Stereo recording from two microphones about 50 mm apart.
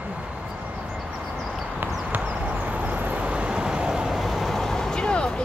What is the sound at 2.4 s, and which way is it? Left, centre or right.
Vehicle, right.